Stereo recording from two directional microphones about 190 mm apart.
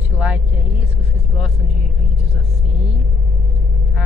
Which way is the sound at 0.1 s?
5° right (ahead or behind).